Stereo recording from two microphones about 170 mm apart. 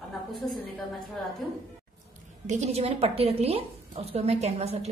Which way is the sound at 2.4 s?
40° right (ahead or behind).